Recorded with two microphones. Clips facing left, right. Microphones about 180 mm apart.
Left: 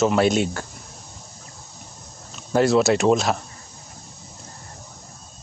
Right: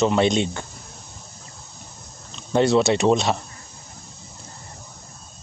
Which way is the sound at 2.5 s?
Centre (ahead or behind).